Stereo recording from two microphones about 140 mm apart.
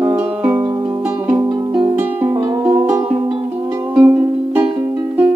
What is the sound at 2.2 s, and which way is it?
Music, 15° right (ahead or behind).